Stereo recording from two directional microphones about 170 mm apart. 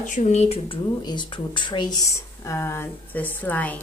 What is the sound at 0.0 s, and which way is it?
Speech, 45° left (ahead or behind).